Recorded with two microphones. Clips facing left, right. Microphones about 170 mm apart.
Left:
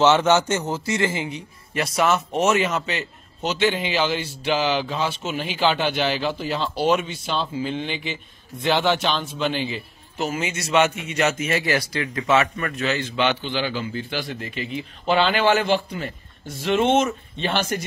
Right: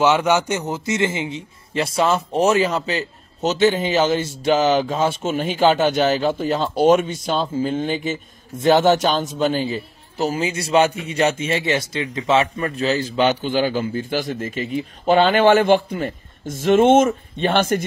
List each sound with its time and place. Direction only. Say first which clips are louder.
0.0 s a man's voice: even; 10° right (ahead or behind); by 17.8 s 55° right (ahead or behind)